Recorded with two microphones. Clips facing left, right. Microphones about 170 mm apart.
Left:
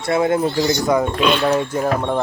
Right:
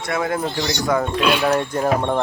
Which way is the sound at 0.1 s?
25° left (ahead or behind).